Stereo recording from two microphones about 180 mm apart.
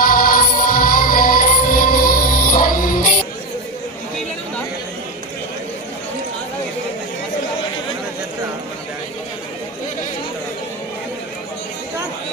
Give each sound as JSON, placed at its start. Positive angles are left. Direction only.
{"t": 0.0, "sound": "music", "side_deg": 55}